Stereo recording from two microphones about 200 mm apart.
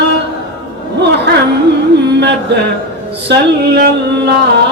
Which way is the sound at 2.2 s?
60° right (ahead or behind).